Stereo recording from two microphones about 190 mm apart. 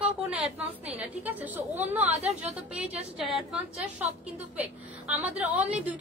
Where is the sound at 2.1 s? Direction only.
35° right (ahead or behind).